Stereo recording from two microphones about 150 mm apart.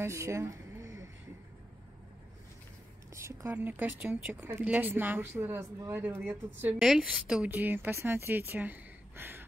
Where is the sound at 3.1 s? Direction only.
20° right (ahead or behind).